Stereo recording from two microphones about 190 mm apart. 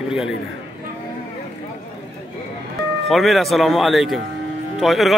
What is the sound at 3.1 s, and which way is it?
A man's voice, centre (ahead or behind).